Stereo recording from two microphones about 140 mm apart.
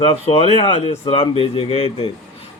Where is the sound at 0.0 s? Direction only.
40° left (ahead or behind).